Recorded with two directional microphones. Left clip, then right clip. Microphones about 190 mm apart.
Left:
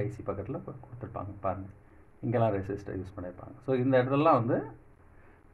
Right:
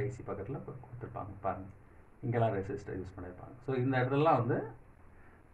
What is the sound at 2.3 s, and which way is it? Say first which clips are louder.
Speech: left 4 dB; 55° left (ahead or behind).